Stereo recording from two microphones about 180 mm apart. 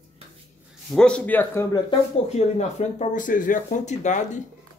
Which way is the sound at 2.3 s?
40° left (ahead or behind).